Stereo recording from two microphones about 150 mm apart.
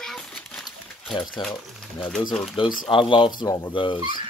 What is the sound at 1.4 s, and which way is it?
Speech, 30° left (ahead or behind).